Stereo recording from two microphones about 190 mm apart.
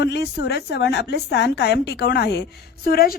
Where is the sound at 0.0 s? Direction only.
60° left (ahead or behind).